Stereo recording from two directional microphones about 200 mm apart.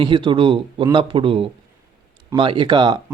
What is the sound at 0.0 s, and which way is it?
Speech, 25° right (ahead or behind).